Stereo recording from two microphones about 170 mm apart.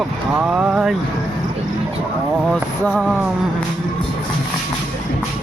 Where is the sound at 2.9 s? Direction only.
5° right (ahead or behind).